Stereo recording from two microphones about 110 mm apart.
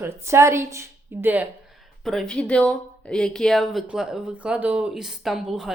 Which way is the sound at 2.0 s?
Centre (ahead or behind).